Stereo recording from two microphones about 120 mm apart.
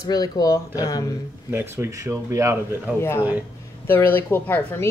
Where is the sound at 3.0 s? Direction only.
20° left (ahead or behind).